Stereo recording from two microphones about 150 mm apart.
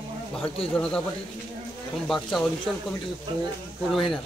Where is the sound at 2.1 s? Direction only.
Centre (ahead or behind).